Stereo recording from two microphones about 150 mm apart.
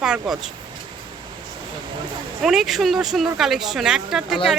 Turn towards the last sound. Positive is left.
turn(degrees=-5)  # may be behind; listen again after turning